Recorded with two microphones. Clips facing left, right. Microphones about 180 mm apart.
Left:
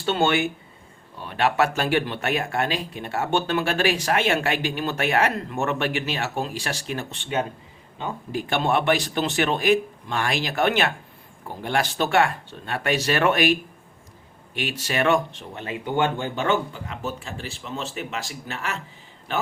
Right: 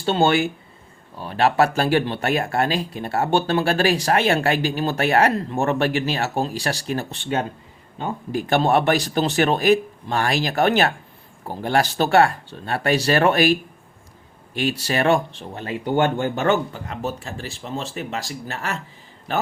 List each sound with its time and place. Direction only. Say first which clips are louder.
0.0 s speech: right 3 dB; 35° right (ahead or behind)